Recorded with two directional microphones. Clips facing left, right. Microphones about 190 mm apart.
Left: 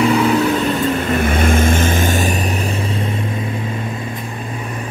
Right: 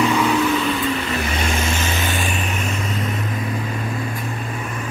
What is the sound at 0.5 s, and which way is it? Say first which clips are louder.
Vehicle: left 4 dB; 45° left (ahead or behind).